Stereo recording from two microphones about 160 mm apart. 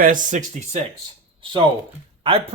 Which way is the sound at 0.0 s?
55° right (ahead or behind).